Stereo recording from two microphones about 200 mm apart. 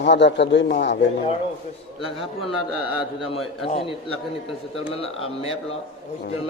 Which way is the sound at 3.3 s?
25° left (ahead or behind).